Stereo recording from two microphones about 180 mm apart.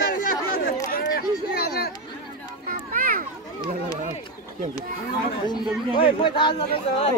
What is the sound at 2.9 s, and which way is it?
Children playing, 50° right (ahead or behind).